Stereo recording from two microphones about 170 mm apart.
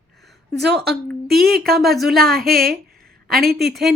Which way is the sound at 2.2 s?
60° right (ahead or behind).